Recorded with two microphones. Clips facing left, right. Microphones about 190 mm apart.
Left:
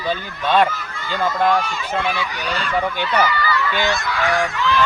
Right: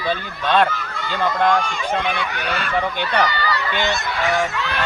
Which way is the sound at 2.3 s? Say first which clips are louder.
Even; 60° right (ahead or behind).